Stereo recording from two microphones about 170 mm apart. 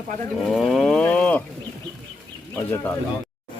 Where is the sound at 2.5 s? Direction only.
15° left (ahead or behind).